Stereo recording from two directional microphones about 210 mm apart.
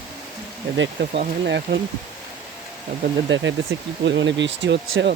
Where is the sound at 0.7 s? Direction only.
60° right (ahead or behind).